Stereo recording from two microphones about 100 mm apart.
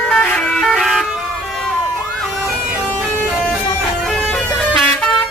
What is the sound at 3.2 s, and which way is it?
Music, 5° left (ahead or behind).